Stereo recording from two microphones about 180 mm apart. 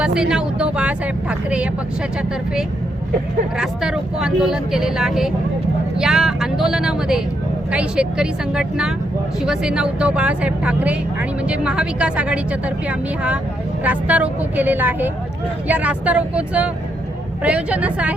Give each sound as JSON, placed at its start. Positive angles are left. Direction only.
{"t": 0.0, "sound": "speech", "side_deg": -5}
{"t": 3.6, "sound": "speech", "side_deg": -5}